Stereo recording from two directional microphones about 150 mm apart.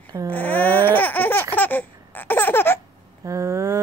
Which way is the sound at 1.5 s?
10° left (ahead or behind).